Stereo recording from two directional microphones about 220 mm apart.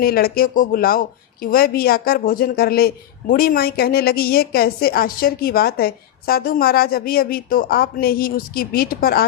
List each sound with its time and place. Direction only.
0.0 s a woman's voice: 45° left (ahead or behind)